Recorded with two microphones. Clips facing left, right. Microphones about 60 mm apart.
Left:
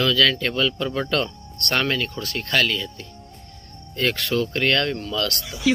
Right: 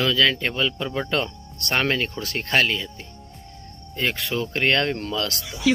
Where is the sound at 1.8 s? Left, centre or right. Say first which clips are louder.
Right 1 dB; right.